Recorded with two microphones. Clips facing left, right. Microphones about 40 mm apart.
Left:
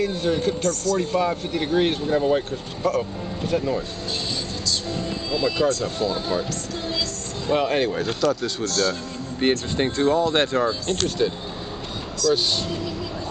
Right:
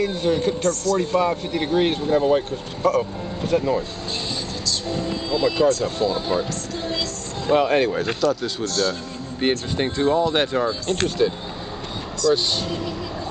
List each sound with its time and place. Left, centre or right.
0.0 s speech: centre
4.8 s music: centre
5.6 s speech: centre
6.1 s speech: centre
7.4 s speech: centre
8.6 s speech: right
9.4 s speech: centre